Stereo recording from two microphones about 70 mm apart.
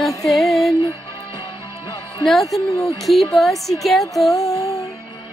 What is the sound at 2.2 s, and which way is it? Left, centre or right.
Speech, centre.